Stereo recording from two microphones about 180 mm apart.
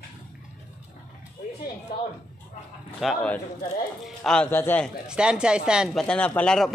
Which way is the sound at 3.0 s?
5° left (ahead or behind).